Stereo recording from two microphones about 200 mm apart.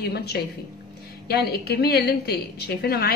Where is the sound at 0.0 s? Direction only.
55° left (ahead or behind).